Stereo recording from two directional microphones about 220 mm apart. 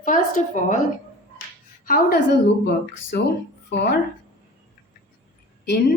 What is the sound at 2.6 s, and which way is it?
A woman's voice, 50° left (ahead or behind).